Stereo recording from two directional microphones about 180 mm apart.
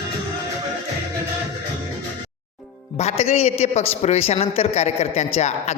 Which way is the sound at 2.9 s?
35° left (ahead or behind).